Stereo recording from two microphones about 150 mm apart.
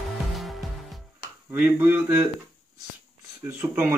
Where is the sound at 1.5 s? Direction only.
15° right (ahead or behind).